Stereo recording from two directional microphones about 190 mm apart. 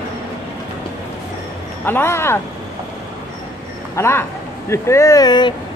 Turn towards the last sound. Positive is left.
turn(degrees=20)  # may be behind; listen again after turning